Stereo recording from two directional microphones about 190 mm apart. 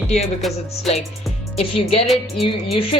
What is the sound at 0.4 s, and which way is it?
Music, centre (ahead or behind).